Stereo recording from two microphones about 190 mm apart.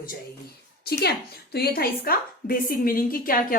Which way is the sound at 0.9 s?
55° left (ahead or behind).